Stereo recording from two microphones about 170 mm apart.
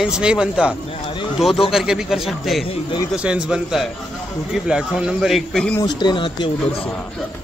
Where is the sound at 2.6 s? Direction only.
35° left (ahead or behind).